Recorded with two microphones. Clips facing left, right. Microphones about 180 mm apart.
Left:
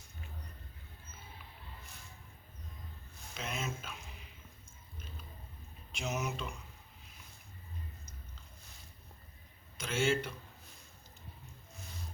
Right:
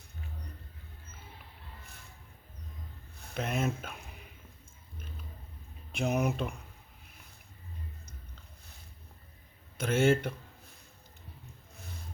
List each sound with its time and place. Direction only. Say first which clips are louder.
3.2 s a sound: right 8 dB; 60° right (ahead or behind)
5.9 s speech: right 8 dB; 55° right (ahead or behind)
9.7 s speech: right 6 dB; 55° right (ahead or behind)